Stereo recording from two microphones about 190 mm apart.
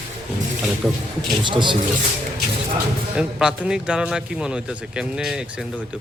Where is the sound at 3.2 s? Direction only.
5° right (ahead or behind).